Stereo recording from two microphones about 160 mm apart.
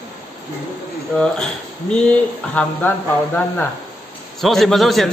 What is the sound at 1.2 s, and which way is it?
Speech, 5° left (ahead or behind).